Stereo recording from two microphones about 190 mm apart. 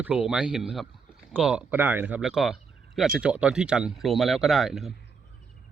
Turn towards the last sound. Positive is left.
turn(degrees=0)  # may be behind; listen again after turning